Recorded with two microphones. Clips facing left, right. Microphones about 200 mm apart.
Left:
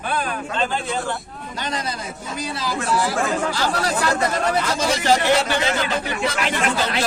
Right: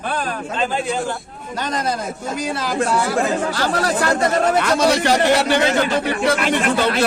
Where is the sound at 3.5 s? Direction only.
55° right (ahead or behind).